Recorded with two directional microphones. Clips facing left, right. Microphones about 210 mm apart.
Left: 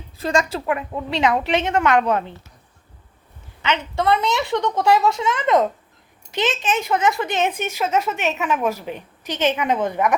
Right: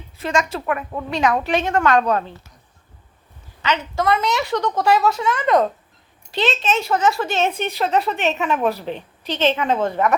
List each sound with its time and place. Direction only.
0.2 s a woman's voice: 35° left (ahead or behind)
0.6 s a woman's voice: 20° left (ahead or behind)
4.2 s a woman's voice: 20° left (ahead or behind)